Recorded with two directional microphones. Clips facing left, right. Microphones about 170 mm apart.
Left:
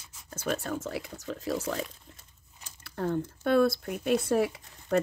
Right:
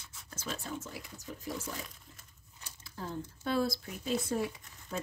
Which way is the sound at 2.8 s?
65° left (ahead or behind).